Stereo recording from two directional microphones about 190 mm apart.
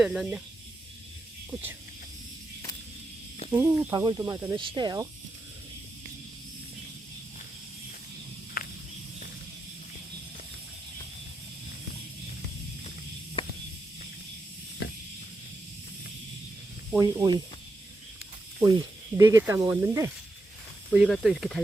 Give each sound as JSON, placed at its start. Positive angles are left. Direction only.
{"t": 0.0, "sound": "speech", "side_deg": -5}
{"t": 3.5, "sound": "speech", "side_deg": -15}
{"t": 4.5, "sound": "speech", "side_deg": -25}
{"t": 8.6, "sound": "snake", "side_deg": 50}
{"t": 13.4, "sound": "snake", "side_deg": 25}
{"t": 14.8, "sound": "a sound", "side_deg": 60}
{"t": 17.0, "sound": "speech", "side_deg": -20}
{"t": 19.1, "sound": "speech", "side_deg": -15}
{"t": 20.9, "sound": "speech", "side_deg": 0}